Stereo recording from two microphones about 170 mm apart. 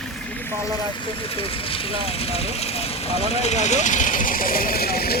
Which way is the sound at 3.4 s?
40° left (ahead or behind).